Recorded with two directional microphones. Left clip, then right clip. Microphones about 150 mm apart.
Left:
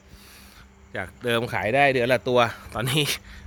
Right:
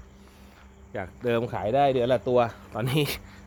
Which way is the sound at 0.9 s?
5° left (ahead or behind).